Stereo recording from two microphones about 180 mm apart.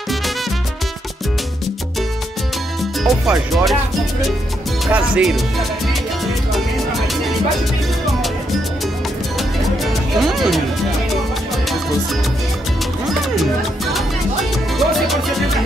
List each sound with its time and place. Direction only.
2.8 s speech: centre (ahead or behind)
4.8 s speech: 5° right (ahead or behind)
10.2 s speech: centre (ahead or behind)
14.8 s music: centre (ahead or behind)